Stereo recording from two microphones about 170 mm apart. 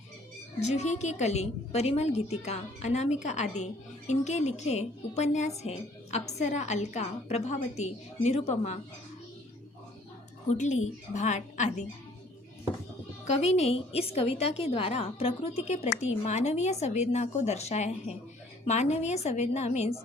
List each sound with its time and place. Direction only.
0.6 s a woman's voice: 40° left (ahead or behind)
10.5 s a woman's voice: 45° left (ahead or behind)
13.2 s a woman's voice: 40° left (ahead or behind)